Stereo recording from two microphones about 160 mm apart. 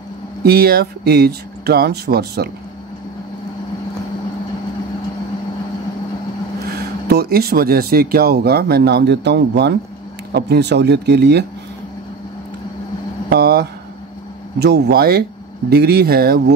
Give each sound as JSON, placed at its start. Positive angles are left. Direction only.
{"t": 0.4, "sound": "speech", "side_deg": -75}
{"t": 6.6, "sound": "speech", "side_deg": -85}
{"t": 13.3, "sound": "speech", "side_deg": -80}